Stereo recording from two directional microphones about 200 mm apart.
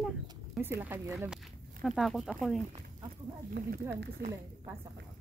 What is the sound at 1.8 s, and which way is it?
Speech, centre (ahead or behind).